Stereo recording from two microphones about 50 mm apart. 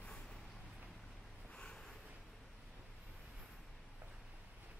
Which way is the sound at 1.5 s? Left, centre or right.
Centre.